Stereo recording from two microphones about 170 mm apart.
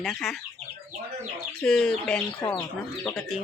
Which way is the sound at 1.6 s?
5° left (ahead or behind).